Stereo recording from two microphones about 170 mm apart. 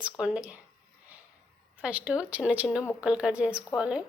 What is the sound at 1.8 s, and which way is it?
Speech, 5° right (ahead or behind).